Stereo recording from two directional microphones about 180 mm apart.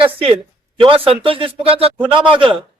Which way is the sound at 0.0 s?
30° right (ahead or behind).